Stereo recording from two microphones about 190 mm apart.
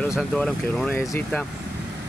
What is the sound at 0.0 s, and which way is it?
Speech, centre (ahead or behind).